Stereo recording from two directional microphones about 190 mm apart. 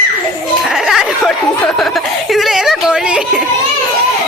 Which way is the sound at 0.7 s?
Centre (ahead or behind).